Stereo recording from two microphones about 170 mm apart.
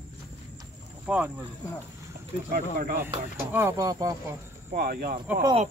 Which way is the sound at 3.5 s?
15° right (ahead or behind).